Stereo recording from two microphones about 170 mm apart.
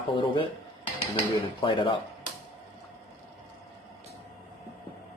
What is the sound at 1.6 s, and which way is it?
Speech, 30° left (ahead or behind).